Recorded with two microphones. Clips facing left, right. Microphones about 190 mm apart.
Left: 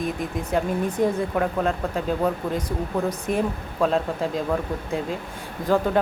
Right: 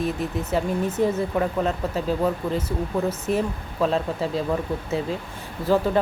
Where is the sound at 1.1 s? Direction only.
Centre (ahead or behind).